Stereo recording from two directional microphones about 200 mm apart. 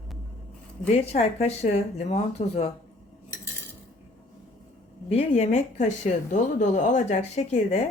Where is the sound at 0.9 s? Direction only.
30° left (ahead or behind).